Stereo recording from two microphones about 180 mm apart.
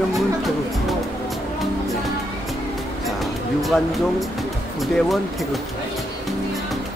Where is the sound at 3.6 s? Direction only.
Centre (ahead or behind).